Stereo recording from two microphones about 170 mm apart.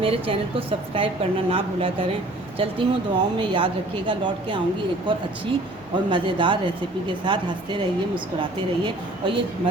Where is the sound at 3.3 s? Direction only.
30° right (ahead or behind).